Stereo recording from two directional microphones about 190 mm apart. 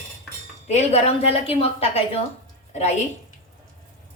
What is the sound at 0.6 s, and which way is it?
A woman's voice, 35° left (ahead or behind).